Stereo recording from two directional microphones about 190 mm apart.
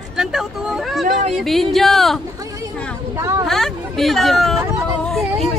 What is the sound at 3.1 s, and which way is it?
Speech, 15° right (ahead or behind).